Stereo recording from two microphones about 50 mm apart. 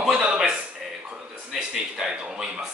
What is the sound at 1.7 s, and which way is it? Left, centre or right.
Speech, centre.